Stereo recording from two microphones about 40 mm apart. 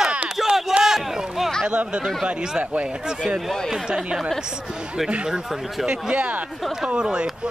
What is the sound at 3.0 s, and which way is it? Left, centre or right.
Speech, centre.